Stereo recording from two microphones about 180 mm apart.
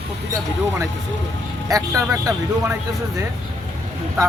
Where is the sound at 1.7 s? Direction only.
20° right (ahead or behind).